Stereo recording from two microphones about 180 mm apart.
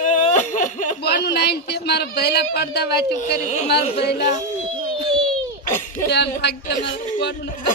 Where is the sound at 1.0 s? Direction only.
65° left (ahead or behind).